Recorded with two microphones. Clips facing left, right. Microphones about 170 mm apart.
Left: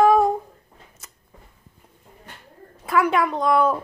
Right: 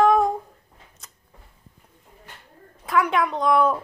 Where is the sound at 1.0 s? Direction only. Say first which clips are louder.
Left 1 dB; 5° left (ahead or behind).